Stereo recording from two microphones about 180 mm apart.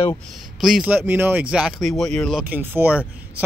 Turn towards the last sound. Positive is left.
turn(degrees=-10)  # may be behind; listen again after turning